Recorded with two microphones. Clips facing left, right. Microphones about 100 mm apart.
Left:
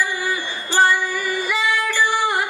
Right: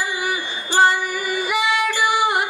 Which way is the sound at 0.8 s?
20° right (ahead or behind).